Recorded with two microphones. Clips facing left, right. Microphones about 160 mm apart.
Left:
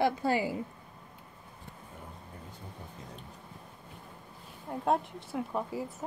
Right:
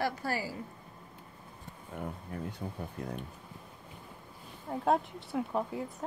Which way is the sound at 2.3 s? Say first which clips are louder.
Right 13 dB; 75° right (ahead or behind).